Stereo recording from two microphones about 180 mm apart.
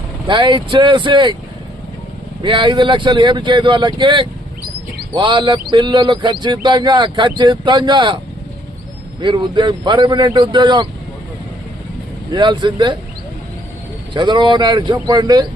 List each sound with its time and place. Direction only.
0.3 s speech: 25° right (ahead or behind)
2.4 s speech: 25° right (ahead or behind)
9.2 s speech: 25° right (ahead or behind)
12.3 s speech: 25° right (ahead or behind)
14.1 s speech: 25° right (ahead or behind)